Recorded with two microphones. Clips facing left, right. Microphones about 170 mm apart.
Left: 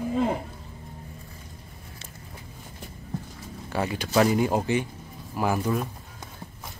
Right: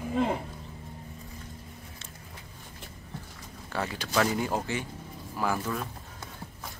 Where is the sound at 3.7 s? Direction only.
15° left (ahead or behind).